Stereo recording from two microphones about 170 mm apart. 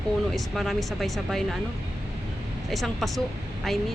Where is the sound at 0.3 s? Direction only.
Centre (ahead or behind).